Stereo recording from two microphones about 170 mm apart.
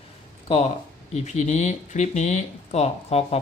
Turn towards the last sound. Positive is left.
turn(degrees=40)  # may be behind; listen again after turning